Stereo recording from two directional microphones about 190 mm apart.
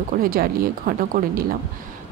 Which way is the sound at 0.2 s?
50° right (ahead or behind).